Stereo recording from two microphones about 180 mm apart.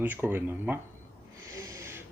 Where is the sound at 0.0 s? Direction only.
10° right (ahead or behind).